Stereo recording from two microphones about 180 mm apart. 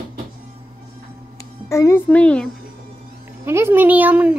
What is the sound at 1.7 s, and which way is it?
Speech, 15° left (ahead or behind).